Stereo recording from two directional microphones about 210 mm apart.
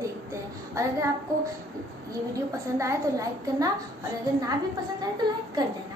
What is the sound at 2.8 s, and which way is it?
Speech, 15° right (ahead or behind).